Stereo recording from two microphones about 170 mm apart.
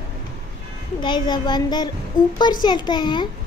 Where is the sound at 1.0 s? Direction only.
25° left (ahead or behind).